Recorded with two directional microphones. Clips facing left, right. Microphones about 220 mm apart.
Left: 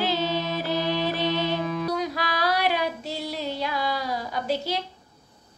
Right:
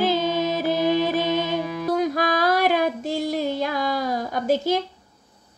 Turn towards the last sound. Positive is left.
turn(degrees=-50)  # may be behind; listen again after turning